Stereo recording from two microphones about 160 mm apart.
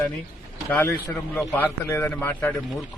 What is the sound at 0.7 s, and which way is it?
A man's voice, 10° left (ahead or behind).